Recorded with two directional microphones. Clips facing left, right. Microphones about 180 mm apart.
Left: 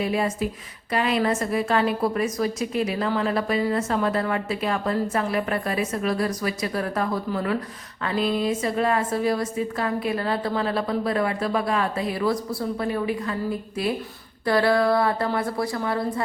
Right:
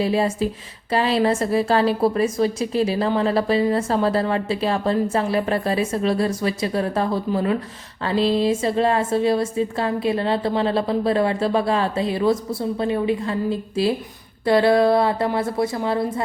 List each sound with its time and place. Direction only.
0.0 s a woman's voice: 30° right (ahead or behind)